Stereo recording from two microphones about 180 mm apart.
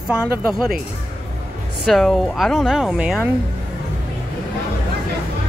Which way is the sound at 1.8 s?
Centre (ahead or behind).